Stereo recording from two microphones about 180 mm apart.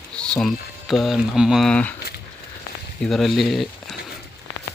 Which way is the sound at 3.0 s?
Centre (ahead or behind).